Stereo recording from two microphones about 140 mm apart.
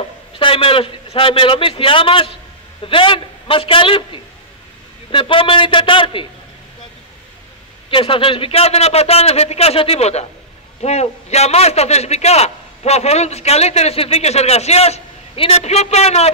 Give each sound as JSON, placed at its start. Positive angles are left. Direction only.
{"t": 0.4, "sound": "a man's voice", "side_deg": 40}
{"t": 7.9, "sound": "a man's voice", "side_deg": 40}